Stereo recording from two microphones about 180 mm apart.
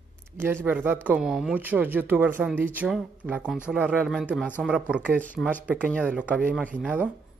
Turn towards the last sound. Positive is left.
turn(degrees=-5)  # may be behind; listen again after turning